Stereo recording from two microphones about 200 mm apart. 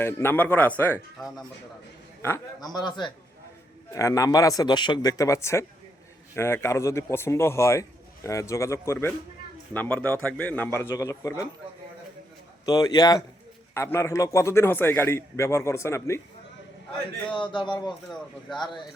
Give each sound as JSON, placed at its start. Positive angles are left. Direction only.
{"t": 0.0, "sound": "a man's voice", "side_deg": 10}
{"t": 2.2, "sound": "a man's voice", "side_deg": 15}
{"t": 12.6, "sound": "a man's voice", "side_deg": 20}
{"t": 17.5, "sound": "a man's voice", "side_deg": 25}